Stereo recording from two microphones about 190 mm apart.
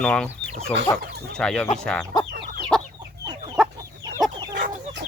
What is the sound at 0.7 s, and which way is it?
Chicken, 10° left (ahead or behind).